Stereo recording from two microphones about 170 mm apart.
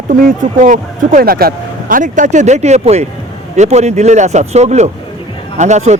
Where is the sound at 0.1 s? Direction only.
50° right (ahead or behind).